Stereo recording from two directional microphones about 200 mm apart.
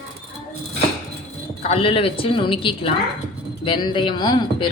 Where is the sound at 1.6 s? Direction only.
30° left (ahead or behind).